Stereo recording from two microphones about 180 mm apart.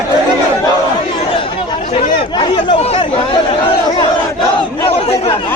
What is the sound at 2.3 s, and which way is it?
Speech, 25° left (ahead or behind).